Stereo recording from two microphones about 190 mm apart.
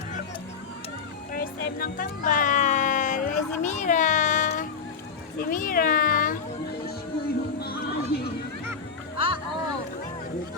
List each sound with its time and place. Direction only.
1.3 s music: 50° left (ahead or behind)
5.4 s speech: 45° left (ahead or behind)
7.6 s neigh: 55° left (ahead or behind)
9.1 s a sound: 30° right (ahead or behind)